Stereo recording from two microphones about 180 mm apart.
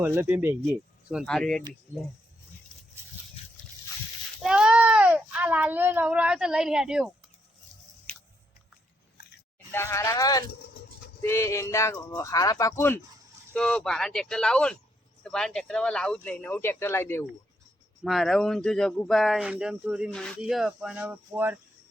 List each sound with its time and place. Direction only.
0.0 s speech: 10° right (ahead or behind)
4.4 s speech: 5° right (ahead or behind)
8.1 s biting: 5° left (ahead or behind)
9.7 s speech: 15° left (ahead or behind)
18.0 s speech: centre (ahead or behind)
20.1 s speech: 5° left (ahead or behind)